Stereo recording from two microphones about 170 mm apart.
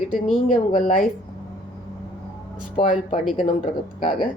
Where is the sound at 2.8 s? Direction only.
50° left (ahead or behind).